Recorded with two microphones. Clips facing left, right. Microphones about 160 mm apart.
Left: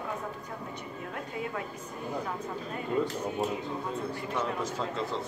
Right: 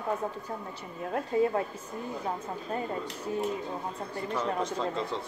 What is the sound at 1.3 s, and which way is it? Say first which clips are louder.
Speech: right 12 dB; 35° right (ahead or behind).